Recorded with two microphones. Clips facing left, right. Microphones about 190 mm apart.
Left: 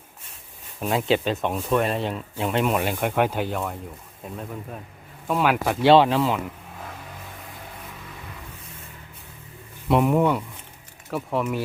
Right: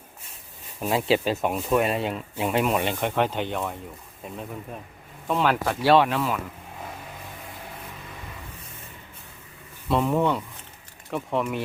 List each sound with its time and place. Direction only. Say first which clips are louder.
0.8 s speech: even; centre (ahead or behind)
5.8 s speech: left 4 dB; 25° left (ahead or behind)
9.9 s speech: left 3 dB; 15° left (ahead or behind)